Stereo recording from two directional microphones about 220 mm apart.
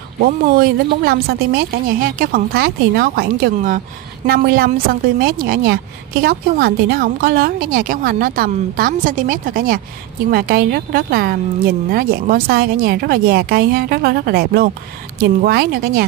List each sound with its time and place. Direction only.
0.2 s a woman's voice: 40° right (ahead or behind)